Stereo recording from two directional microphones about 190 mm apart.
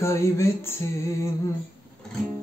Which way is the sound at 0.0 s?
15° left (ahead or behind).